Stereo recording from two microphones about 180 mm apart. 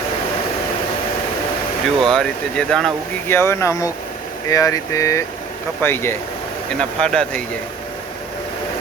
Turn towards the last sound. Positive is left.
turn(degrees=5)  # may be behind; listen again after turning